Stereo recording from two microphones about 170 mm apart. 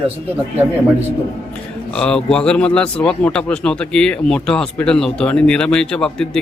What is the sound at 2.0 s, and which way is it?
A man's voice, 5° left (ahead or behind).